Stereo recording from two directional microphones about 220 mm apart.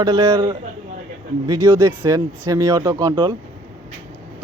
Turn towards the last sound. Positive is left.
turn(degrees=-20)  # may be behind; listen again after turning